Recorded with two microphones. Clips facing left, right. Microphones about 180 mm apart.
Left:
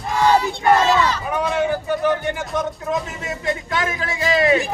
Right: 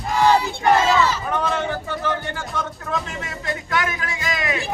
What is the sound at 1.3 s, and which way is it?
Music, 10° left (ahead or behind).